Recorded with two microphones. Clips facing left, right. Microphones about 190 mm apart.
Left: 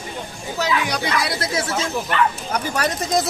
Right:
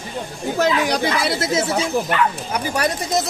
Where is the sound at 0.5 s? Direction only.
50° right (ahead or behind).